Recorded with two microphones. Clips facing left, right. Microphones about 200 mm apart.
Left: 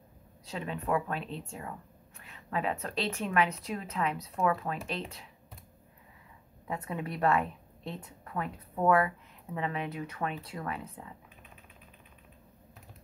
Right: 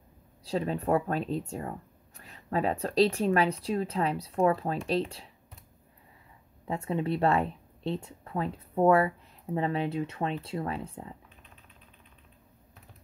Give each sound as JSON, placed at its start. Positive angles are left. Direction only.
{"t": 0.5, "sound": "speech", "side_deg": -35}
{"t": 6.7, "sound": "a woman's voice", "side_deg": -25}